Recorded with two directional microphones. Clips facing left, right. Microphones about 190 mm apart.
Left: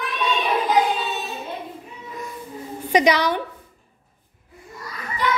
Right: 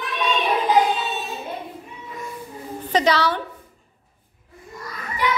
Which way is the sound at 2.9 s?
15° left (ahead or behind).